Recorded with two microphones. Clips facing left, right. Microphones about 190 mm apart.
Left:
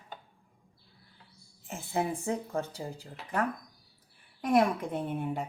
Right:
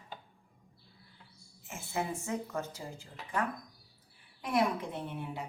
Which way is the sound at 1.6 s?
35° left (ahead or behind).